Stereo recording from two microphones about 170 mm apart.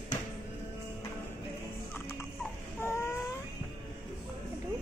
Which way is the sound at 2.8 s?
15° left (ahead or behind).